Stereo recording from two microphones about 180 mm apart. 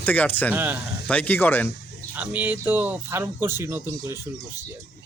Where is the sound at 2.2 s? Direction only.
10° right (ahead or behind).